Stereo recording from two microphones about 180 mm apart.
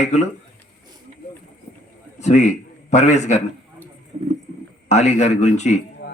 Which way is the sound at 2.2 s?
40° left (ahead or behind).